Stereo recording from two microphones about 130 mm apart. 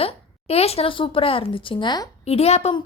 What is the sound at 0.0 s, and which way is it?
A woman's voice, 50° left (ahead or behind).